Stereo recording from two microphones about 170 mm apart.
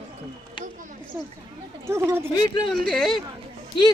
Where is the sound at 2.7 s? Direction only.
Centre (ahead or behind).